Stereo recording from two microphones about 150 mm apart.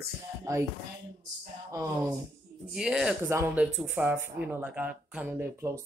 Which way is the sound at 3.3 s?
15° right (ahead or behind).